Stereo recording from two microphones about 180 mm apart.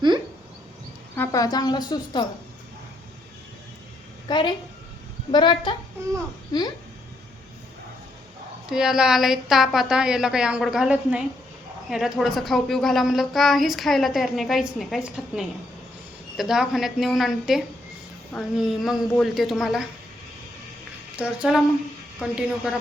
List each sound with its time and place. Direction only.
1.1 s speech: 15° left (ahead or behind)
4.3 s speech: 25° left (ahead or behind)
8.7 s a woman's voice: 5° right (ahead or behind)
21.2 s a woman's voice: 5° right (ahead or behind)